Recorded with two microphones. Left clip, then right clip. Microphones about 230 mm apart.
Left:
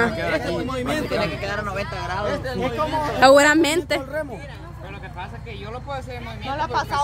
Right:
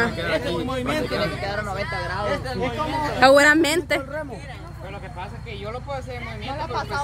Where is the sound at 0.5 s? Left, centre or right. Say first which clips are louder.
Even; centre.